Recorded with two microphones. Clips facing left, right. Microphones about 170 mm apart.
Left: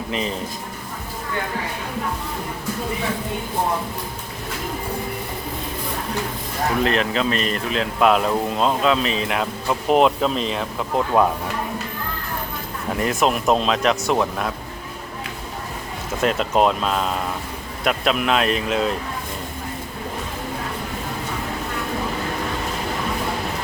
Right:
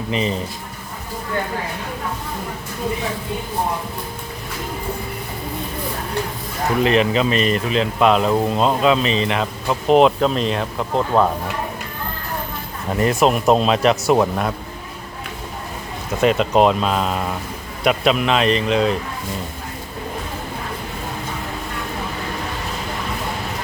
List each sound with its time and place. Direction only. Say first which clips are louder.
0.1 s speech: right 4 dB; centre (ahead or behind)
6.8 s speech: right 7 dB; 5° right (ahead or behind)
13.0 s speech: right 4 dB; centre (ahead or behind)
16.2 s speech: right 4 dB; centre (ahead or behind)